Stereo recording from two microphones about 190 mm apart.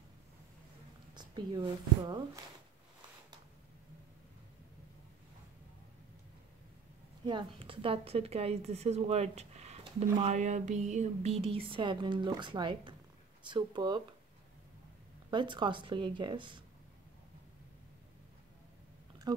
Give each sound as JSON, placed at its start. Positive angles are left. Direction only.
{"t": 1.1, "sound": "speech", "side_deg": -20}
{"t": 7.2, "sound": "a woman's voice", "side_deg": -25}
{"t": 15.3, "sound": "speech", "side_deg": -25}
{"t": 19.3, "sound": "speech", "side_deg": -20}